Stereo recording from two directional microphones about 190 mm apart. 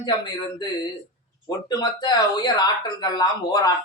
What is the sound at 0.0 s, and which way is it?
Speech, 20° left (ahead or behind).